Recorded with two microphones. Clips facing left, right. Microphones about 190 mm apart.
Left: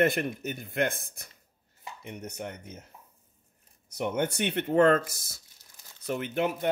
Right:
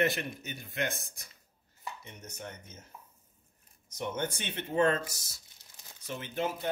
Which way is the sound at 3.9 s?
65° left (ahead or behind).